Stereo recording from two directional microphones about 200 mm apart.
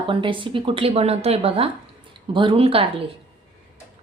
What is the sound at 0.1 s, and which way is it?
A woman's voice, 25° right (ahead or behind).